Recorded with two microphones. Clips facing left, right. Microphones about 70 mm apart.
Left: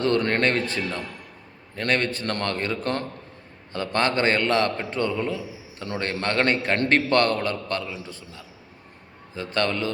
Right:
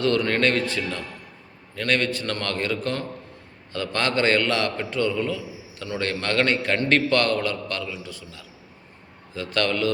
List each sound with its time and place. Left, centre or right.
0.0 s a man's voice: left